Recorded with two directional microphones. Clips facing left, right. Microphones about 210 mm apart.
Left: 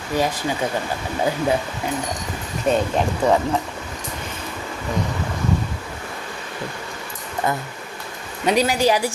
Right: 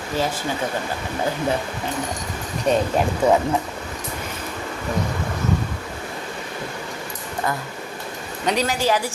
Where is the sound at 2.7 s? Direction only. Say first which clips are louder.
Even; 5° right (ahead or behind).